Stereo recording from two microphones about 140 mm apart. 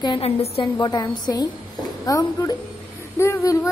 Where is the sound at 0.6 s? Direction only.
30° left (ahead or behind).